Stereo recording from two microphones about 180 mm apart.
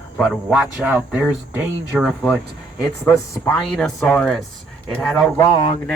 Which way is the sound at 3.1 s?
5° left (ahead or behind).